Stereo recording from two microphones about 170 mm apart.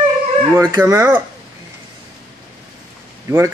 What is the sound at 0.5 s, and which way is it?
Speech, 15° right (ahead or behind).